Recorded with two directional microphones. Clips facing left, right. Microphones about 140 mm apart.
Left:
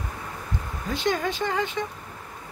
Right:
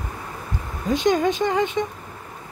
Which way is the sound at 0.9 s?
20° right (ahead or behind).